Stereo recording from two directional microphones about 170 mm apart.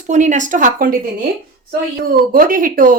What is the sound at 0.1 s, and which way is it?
Speech, 45° right (ahead or behind).